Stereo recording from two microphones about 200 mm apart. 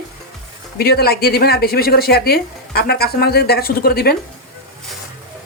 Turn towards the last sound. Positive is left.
turn(degrees=50)  # may be behind; listen again after turning